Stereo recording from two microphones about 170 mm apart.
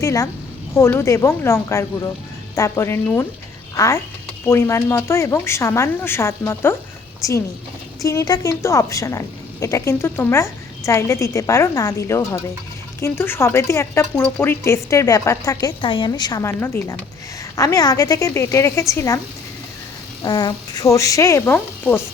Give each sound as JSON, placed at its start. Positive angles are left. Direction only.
{"t": 0.0, "sound": "a woman's voice", "side_deg": 20}
{"t": 20.2, "sound": "speech", "side_deg": 25}